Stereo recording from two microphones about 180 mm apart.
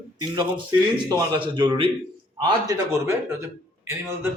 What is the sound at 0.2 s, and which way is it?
A man's voice, 25° right (ahead or behind).